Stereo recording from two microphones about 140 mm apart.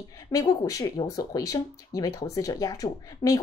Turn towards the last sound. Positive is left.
turn(degrees=25)  # may be behind; listen again after turning